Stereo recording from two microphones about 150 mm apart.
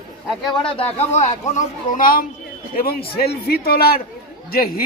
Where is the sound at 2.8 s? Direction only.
90° left.